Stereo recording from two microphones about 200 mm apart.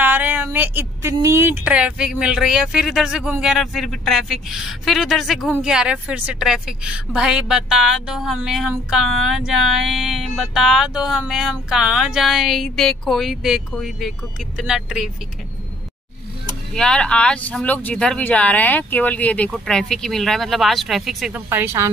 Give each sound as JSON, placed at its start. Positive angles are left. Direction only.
{"t": 0.0, "sound": "a sound", "side_deg": -10}
{"t": 1.1, "sound": "speech", "side_deg": -15}
{"t": 16.7, "sound": "speech", "side_deg": 5}
{"t": 21.5, "sound": "speech", "side_deg": -10}